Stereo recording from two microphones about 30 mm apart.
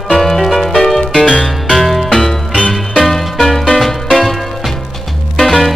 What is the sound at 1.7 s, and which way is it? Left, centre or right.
Music, centre.